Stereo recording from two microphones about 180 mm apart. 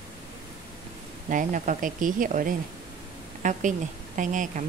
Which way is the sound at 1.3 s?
45° right (ahead or behind).